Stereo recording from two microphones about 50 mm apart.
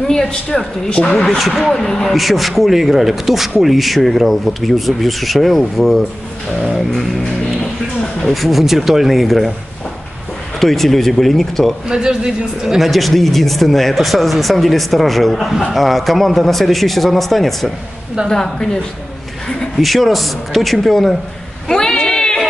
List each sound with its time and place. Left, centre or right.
0.1 s speech: centre
2.1 s speech: centre
10.6 s speech: centre
11.9 s a man's voice: centre
12.6 s speech: centre
19.8 s speech: centre
21.6 s a sound: centre